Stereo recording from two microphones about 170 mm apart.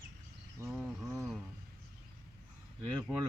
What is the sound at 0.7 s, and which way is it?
Speech, 5° right (ahead or behind).